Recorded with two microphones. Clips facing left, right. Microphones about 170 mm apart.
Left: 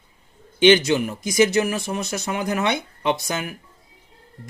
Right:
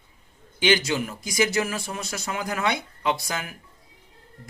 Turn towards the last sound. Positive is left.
turn(degrees=20)  # may be behind; listen again after turning